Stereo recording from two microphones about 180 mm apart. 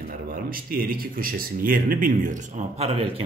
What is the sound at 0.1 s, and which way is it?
Speech, 50° right (ahead or behind).